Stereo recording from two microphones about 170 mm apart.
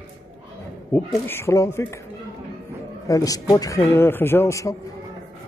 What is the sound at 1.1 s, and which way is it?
Speech, 15° left (ahead or behind).